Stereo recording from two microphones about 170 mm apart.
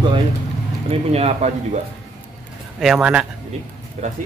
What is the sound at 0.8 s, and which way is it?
Speech, 40° right (ahead or behind).